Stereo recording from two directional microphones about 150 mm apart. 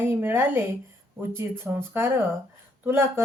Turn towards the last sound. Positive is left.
turn(degrees=-15)  # may be behind; listen again after turning